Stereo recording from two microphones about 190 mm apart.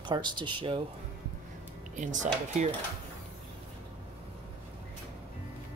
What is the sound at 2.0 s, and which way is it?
Speech, 40° right (ahead or behind).